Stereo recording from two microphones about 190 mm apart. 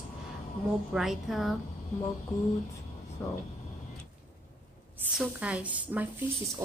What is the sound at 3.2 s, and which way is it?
Speech, 15° left (ahead or behind).